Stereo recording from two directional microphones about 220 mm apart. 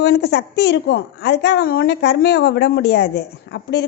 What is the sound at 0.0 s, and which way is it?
A woman's voice, 50° left (ahead or behind).